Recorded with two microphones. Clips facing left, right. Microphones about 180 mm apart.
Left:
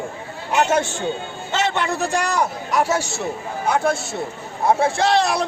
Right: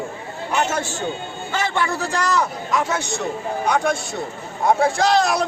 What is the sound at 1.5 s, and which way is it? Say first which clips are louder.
A man's voice: left 1 dB; 20° left (ahead or behind).